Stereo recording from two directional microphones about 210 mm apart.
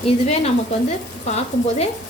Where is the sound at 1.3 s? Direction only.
30° left (ahead or behind).